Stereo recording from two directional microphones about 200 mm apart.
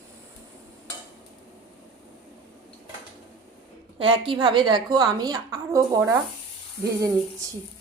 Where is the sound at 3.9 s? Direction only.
25° right (ahead or behind).